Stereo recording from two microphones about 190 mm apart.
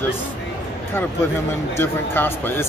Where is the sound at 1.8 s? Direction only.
10° left (ahead or behind).